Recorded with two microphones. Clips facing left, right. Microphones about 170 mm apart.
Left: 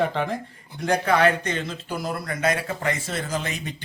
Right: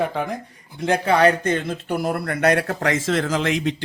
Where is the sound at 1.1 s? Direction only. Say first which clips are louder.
Right 4 dB; 45° right (ahead or behind).